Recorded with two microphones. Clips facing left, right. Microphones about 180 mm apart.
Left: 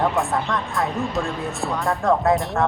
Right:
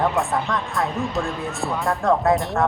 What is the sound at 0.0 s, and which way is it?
Speech, centre (ahead or behind).